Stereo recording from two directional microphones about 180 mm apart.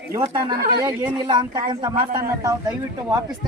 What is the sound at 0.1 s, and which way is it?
Speech, 20° right (ahead or behind).